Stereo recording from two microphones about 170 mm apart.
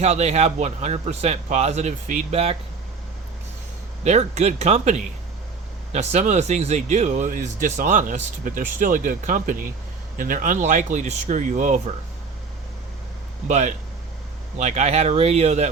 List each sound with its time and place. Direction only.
0.0 s a man's voice: 40° right (ahead or behind)
4.0 s a man's voice: 40° right (ahead or behind)
13.5 s a man's voice: 45° right (ahead or behind)